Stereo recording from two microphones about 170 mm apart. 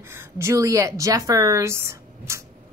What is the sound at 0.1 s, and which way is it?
A woman's voice, 15° right (ahead or behind).